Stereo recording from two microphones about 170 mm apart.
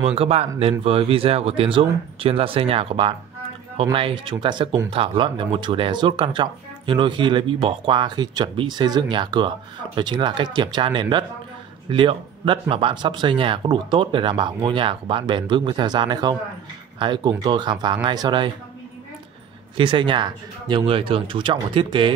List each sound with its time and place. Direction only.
0.0 s speech: 35° right (ahead or behind)
19.8 s speech: 30° right (ahead or behind)